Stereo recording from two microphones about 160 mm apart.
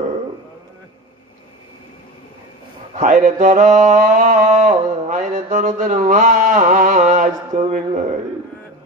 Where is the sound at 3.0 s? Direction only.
50° right (ahead or behind).